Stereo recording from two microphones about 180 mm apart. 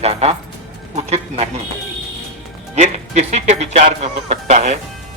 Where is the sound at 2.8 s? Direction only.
40° right (ahead or behind).